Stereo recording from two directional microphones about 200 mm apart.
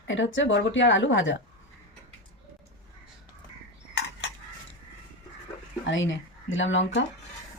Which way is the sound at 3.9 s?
60° left (ahead or behind).